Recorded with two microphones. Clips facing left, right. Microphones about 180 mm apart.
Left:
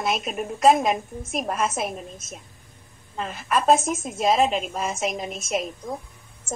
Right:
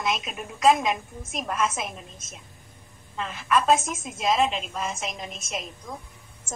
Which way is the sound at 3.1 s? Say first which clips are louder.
Even; 45° left (ahead or behind).